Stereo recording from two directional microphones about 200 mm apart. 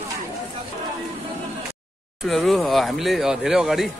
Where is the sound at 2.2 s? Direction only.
Centre (ahead or behind).